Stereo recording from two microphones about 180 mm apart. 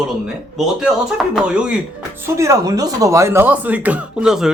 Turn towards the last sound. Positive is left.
turn(degrees=-5)  # may be behind; listen again after turning